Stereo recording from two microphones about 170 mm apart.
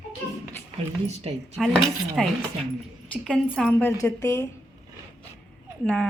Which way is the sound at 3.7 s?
15° left (ahead or behind).